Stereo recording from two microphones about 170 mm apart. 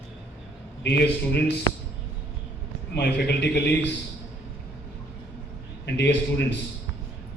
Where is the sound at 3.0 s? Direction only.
90° left.